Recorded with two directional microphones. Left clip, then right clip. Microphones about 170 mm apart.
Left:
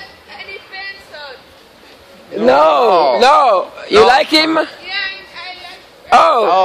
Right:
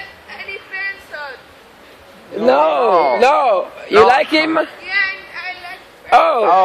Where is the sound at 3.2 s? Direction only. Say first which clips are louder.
Left 3 dB; 25° left (ahead or behind).